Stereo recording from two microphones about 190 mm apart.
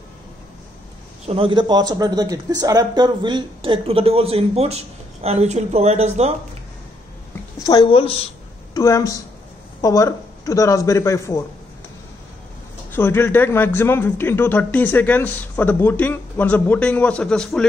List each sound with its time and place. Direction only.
1.2 s speech: 30° right (ahead or behind)
7.6 s a woman's voice: 25° left (ahead or behind)
8.7 s a man's voice: 15° left (ahead or behind)
12.9 s a man's voice: 10° left (ahead or behind)